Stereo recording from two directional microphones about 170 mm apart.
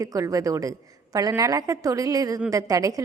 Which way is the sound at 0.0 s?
20° right (ahead or behind).